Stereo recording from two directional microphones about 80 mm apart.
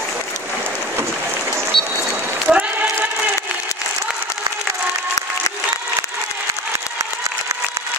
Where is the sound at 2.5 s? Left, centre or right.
Centre.